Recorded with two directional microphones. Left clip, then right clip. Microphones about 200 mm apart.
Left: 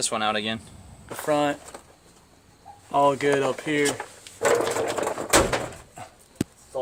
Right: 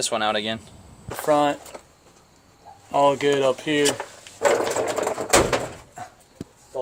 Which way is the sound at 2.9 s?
5° left (ahead or behind).